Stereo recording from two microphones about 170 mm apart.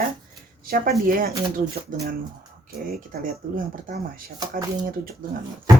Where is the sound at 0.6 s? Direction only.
60° right (ahead or behind).